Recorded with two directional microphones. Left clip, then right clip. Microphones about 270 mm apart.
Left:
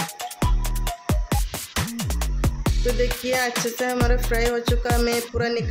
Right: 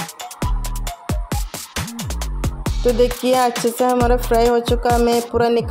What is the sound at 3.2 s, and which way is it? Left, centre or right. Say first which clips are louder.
Speech: right 6 dB; right.